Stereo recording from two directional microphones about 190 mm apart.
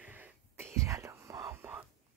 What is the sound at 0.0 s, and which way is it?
Whispering, 10° right (ahead or behind).